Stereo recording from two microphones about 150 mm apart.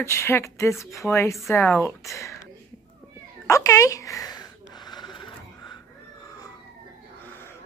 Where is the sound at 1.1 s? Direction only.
20° left (ahead or behind).